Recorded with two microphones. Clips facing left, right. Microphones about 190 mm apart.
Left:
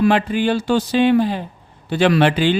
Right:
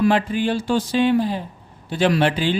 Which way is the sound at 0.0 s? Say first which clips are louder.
Left 2 dB; 70° left (ahead or behind).